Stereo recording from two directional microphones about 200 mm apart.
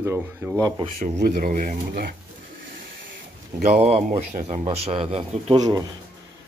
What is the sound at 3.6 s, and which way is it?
Speech, 30° right (ahead or behind).